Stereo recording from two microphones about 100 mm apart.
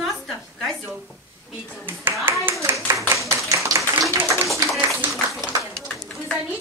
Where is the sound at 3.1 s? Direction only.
30° right (ahead or behind).